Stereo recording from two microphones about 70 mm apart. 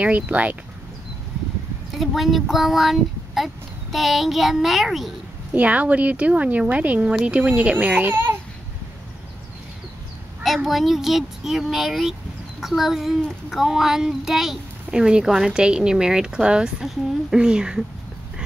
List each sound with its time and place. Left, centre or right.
0.0 s speech: right
1.9 s speech: centre
5.5 s speech: right
10.4 s speech: centre